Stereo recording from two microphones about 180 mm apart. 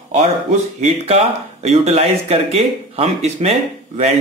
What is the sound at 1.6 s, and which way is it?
Speech, 35° right (ahead or behind).